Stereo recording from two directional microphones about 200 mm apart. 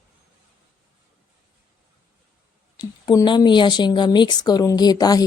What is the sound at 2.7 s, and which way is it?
Speech, 20° left (ahead or behind).